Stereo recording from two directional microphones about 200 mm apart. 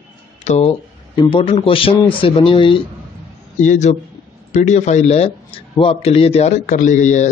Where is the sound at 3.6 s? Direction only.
40° left (ahead or behind).